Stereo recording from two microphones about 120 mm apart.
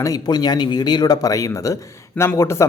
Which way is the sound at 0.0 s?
30° left (ahead or behind).